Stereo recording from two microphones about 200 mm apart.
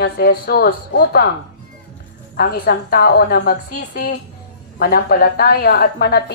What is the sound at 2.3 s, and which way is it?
A woman's voice, 50° left (ahead or behind).